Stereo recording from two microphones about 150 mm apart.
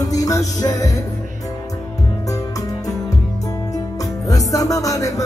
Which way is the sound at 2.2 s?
20° left (ahead or behind).